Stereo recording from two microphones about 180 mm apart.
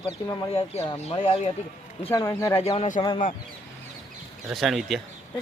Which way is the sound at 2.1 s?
20° left (ahead or behind).